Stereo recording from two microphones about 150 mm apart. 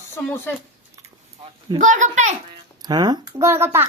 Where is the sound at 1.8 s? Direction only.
55° right (ahead or behind).